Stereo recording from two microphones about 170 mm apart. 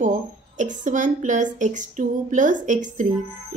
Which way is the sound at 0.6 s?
45° right (ahead or behind).